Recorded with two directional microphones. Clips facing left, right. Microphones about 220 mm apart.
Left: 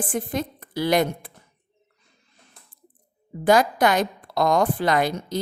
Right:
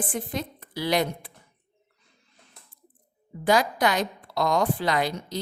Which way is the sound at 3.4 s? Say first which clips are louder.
Left 4 dB; 50° left (ahead or behind).